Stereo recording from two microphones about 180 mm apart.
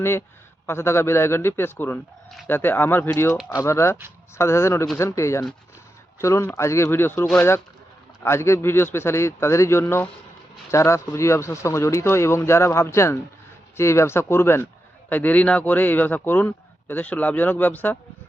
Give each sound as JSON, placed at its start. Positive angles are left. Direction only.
{"t": 0.0, "sound": "a man's voice", "side_deg": 15}